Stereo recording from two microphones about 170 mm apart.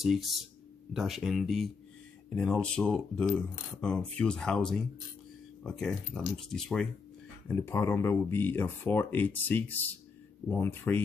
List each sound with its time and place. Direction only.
0.0 s speech: centre (ahead or behind)